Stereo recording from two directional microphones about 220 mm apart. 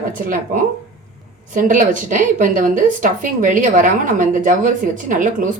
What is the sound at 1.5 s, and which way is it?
A woman's voice, 35° right (ahead or behind).